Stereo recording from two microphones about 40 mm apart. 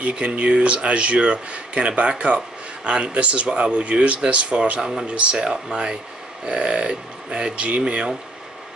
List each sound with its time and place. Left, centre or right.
0.1 s speech: right